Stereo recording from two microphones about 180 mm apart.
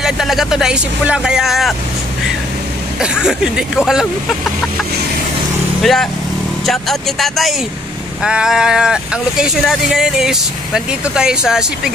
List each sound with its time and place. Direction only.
0.0 s speech: centre (ahead or behind)
3.0 s speech: 5° right (ahead or behind)